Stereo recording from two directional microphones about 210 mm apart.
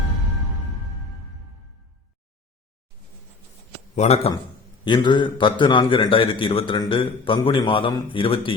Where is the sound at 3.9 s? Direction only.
30° left (ahead or behind).